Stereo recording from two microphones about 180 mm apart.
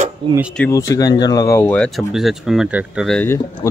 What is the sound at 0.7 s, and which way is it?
Speech, 20° left (ahead or behind).